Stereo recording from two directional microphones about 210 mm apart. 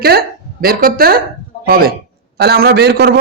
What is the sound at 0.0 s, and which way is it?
Speech, 45° right (ahead or behind).